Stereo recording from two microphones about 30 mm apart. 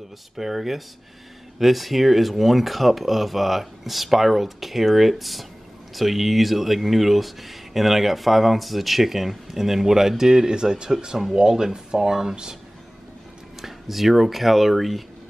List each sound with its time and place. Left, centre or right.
0.4 s speech: centre
13.6 s speech: centre